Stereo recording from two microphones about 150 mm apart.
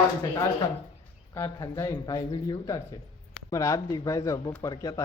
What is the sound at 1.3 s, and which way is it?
Speech, 20° left (ahead or behind).